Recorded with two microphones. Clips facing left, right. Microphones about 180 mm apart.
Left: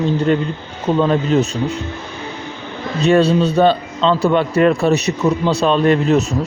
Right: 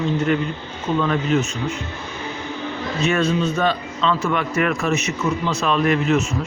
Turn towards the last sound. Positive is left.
turn(degrees=35)  # may be behind; listen again after turning